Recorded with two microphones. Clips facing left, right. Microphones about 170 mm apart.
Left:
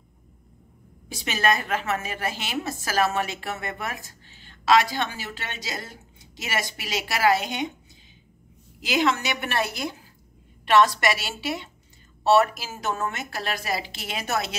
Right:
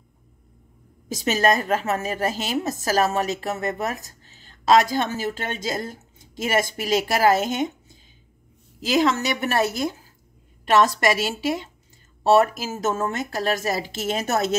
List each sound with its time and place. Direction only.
1.0 s a woman's voice: 40° right (ahead or behind)